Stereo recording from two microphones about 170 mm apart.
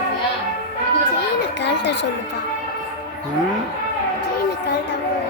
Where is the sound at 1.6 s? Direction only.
90° left.